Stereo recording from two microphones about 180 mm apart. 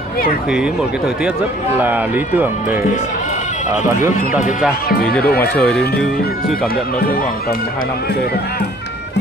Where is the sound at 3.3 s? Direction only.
40° left (ahead or behind).